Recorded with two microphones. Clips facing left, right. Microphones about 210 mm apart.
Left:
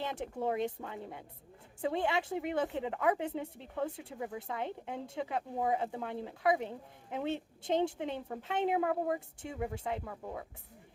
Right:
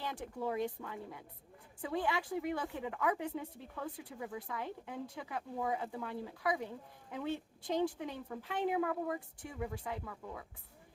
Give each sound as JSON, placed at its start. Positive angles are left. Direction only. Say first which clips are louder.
{"t": 0.0, "sound": "a woman's voice", "louder": "left 4 dB", "side_deg": 25}
{"t": 1.8, "sound": "a woman's voice", "louder": "left 4 dB", "side_deg": 25}
{"t": 10.0, "sound": "speech", "louder": "left 4 dB", "side_deg": 40}